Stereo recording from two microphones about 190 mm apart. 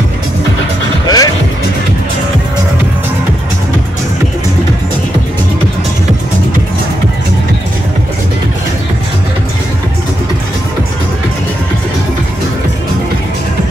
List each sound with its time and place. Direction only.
1.0 s music: 20° left (ahead or behind)